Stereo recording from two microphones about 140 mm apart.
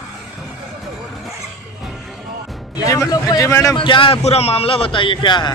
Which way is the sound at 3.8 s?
40° left (ahead or behind).